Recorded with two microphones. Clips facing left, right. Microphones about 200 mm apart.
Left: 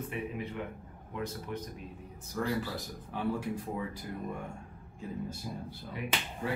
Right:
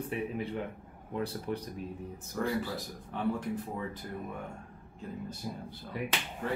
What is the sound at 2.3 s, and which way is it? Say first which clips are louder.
Speech: right 1 dB; centre (ahead or behind).